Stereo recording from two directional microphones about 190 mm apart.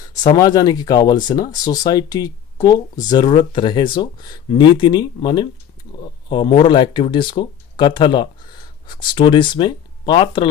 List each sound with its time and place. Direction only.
0.2 s speech: 20° left (ahead or behind)